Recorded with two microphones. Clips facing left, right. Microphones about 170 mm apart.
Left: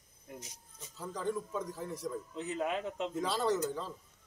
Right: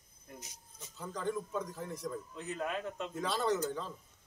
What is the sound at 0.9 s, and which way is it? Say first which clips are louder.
A man's voice: left 1 dB; 5° left (ahead or behind).